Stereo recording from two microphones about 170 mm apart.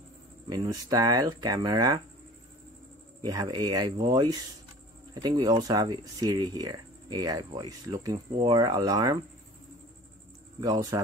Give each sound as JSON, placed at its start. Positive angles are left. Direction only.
{"t": 0.5, "sound": "speech", "side_deg": -25}
{"t": 3.2, "sound": "speech", "side_deg": -25}
{"t": 10.6, "sound": "speech", "side_deg": -25}